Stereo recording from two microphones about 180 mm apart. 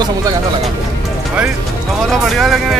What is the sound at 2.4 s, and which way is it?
Speech, centre (ahead or behind).